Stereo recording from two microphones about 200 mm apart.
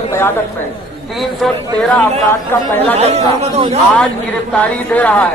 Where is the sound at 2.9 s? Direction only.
30° right (ahead or behind).